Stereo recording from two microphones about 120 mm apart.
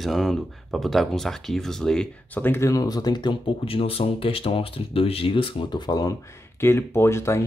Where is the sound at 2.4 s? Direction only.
20° left (ahead or behind).